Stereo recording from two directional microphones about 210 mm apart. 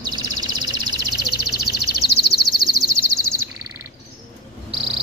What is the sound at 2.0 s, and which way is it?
Bird, 50° left (ahead or behind).